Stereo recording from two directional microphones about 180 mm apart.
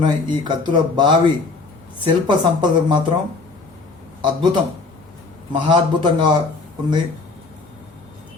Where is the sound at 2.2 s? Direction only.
25° right (ahead or behind).